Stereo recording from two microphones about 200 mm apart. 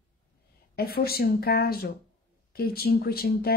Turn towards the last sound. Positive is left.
turn(degrees=50)  # may be behind; listen again after turning